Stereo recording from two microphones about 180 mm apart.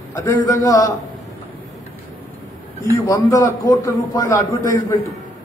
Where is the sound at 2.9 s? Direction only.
20° left (ahead or behind).